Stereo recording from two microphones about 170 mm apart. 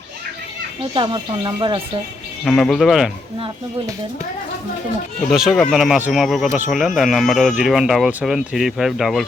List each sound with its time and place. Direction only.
0.9 s speech: 30° right (ahead or behind)
2.4 s speech: centre (ahead or behind)
5.3 s speech: centre (ahead or behind)